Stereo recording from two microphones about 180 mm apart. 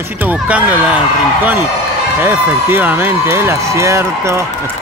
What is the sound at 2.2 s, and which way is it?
Speech, 10° right (ahead or behind).